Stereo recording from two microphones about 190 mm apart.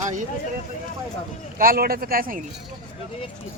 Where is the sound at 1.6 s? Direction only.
50° right (ahead or behind).